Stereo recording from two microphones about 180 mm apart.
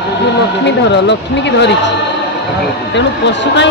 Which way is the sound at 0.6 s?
75° left (ahead or behind).